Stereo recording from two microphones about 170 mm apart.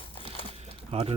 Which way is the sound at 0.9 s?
35° right (ahead or behind).